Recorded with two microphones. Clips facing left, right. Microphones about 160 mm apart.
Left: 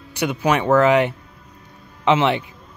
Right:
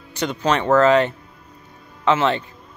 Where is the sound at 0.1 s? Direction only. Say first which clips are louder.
Left 1 dB; 10° left (ahead or behind).